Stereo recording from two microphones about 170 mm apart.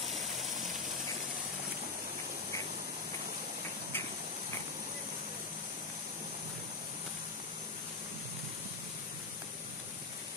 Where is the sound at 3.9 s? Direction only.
10° left (ahead or behind).